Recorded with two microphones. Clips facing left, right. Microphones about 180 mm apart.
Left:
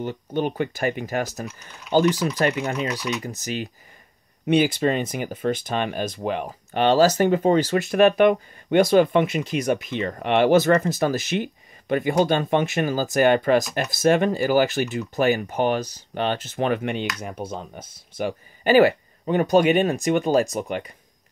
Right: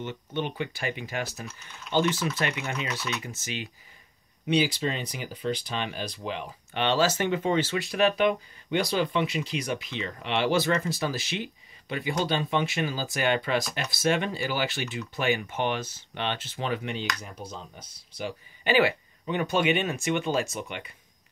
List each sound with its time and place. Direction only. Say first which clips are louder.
0.0 s speech: left 7 dB; 40° left (ahead or behind)
2.9 s speech: left 6 dB; 15° left (ahead or behind)
3.2 s speech: left 7 dB; 40° left (ahead or behind)
4.5 s speech: left 6 dB; 50° left (ahead or behind)